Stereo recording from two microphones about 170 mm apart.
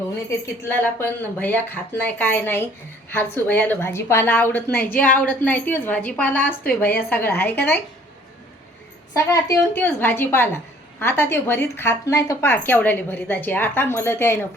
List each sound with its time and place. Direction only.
0.3 s speech: 15° left (ahead or behind)
4.7 s a woman's voice: 60° left (ahead or behind)
5.3 s speech: 10° left (ahead or behind)
9.1 s speech: 20° left (ahead or behind)